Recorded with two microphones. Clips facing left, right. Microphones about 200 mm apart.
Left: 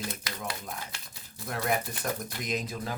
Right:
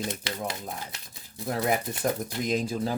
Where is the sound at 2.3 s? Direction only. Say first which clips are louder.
Right 6 dB; 30° right (ahead or behind).